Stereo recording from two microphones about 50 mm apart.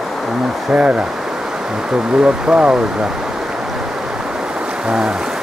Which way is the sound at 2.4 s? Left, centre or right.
Right.